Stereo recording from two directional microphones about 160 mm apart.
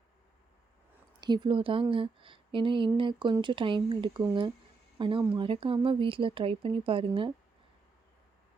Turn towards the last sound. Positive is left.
turn(degrees=-35)  # may be behind; listen again after turning